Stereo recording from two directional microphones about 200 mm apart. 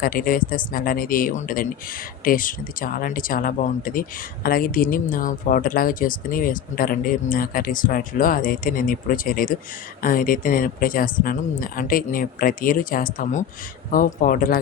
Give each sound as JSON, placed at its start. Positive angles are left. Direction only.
{"t": 0.0, "sound": "speech", "side_deg": 45}